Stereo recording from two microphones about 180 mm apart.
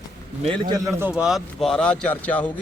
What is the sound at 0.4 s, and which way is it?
A man's voice, 25° right (ahead or behind).